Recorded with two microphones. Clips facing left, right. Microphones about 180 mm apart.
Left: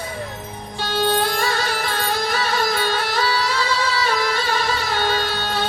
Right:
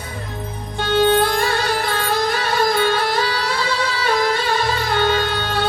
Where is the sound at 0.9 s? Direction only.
60° right (ahead or behind).